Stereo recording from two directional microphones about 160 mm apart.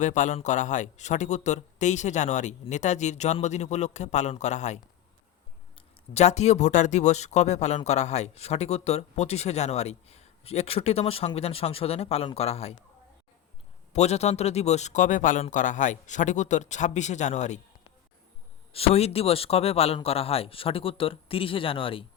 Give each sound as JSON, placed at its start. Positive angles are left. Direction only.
{"t": 0.0, "sound": "speech", "side_deg": 50}
{"t": 13.9, "sound": "speech", "side_deg": 40}
{"t": 18.7, "sound": "speech", "side_deg": 40}